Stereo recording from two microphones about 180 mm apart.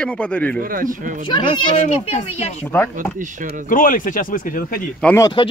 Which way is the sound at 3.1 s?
45° right (ahead or behind).